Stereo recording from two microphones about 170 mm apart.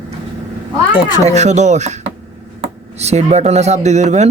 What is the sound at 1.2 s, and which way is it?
Speech, 40° right (ahead or behind).